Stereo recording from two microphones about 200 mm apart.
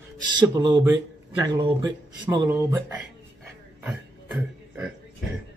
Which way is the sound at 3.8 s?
5° right (ahead or behind).